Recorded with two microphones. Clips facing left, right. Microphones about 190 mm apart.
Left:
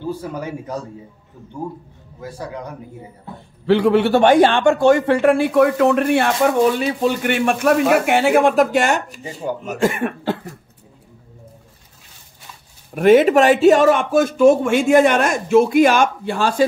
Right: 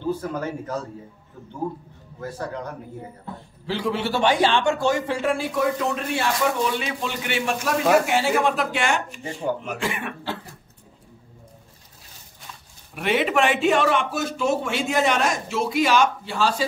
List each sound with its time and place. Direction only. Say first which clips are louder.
0.0 s a man's voice: even; 10° left (ahead or behind)
2.1 s a man's voice: left 1 dB; 10° left (ahead or behind)
3.6 s a man's voice: left 11 dB; 60° left (ahead or behind); by 9.2 s 40° left (ahead or behind)
9.2 s a man's voice: left 1 dB; 10° left (ahead or behind)
9.6 s a man's voice: left 9 dB; 45° left (ahead or behind)
12.9 s a man's voice: left 11 dB; 45° left (ahead or behind)